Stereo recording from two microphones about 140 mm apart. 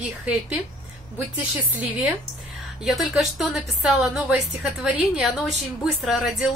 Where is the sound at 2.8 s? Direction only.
Centre (ahead or behind).